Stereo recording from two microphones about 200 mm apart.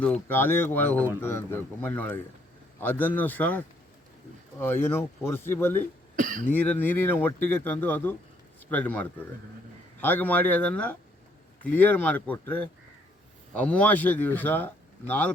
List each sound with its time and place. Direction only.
0.0 s a man's voice: 10° left (ahead or behind)
4.6 s a man's voice: 10° left (ahead or behind)
6.1 s speech: 40° right (ahead or behind)
6.5 s a man's voice: 10° left (ahead or behind)